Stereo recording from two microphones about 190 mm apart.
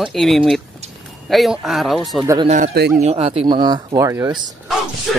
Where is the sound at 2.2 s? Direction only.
20° right (ahead or behind).